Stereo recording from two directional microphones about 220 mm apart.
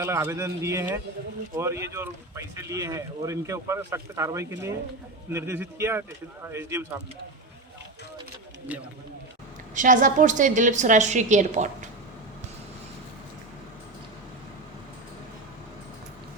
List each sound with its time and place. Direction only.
0.0 s speech: 10° right (ahead or behind)
8.7 s speech: 5° right (ahead or behind)
9.7 s a woman's voice: 35° right (ahead or behind)